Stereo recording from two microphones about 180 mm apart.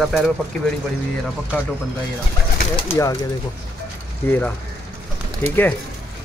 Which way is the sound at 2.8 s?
15° left (ahead or behind).